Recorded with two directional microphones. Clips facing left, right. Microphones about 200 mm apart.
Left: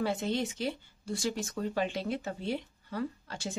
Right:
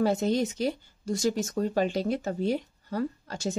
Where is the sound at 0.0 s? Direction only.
40° right (ahead or behind).